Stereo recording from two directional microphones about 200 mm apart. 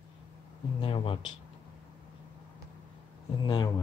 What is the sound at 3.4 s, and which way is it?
Speech, 20° left (ahead or behind).